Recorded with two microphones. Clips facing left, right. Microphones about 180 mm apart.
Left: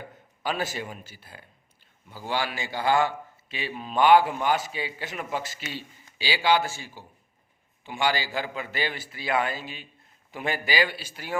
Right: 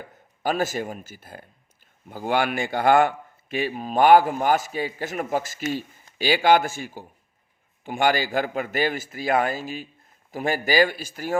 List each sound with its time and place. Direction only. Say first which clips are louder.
0.4 s speech: right 5 dB; 45° right (ahead or behind)